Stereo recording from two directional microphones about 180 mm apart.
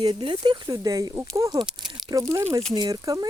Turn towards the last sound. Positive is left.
turn(degrees=-20)  # may be behind; listen again after turning